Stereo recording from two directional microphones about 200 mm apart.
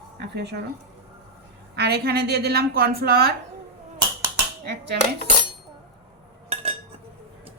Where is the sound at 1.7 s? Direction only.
55° right (ahead or behind).